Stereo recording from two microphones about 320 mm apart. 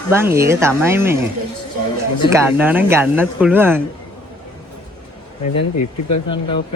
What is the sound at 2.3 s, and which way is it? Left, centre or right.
Speech, centre.